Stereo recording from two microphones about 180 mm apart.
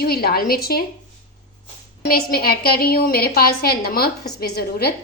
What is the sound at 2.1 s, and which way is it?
A woman's voice, 55° left (ahead or behind).